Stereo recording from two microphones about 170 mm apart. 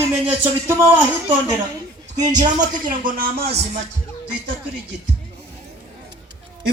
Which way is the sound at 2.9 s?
60° right (ahead or behind).